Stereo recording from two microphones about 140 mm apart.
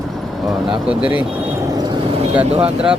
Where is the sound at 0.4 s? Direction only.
5° right (ahead or behind).